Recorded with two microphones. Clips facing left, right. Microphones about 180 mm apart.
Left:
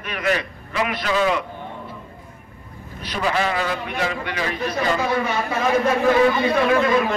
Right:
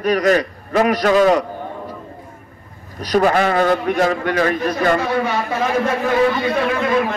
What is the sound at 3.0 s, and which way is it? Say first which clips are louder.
A man's voice: right 8 dB; 45° right (ahead or behind).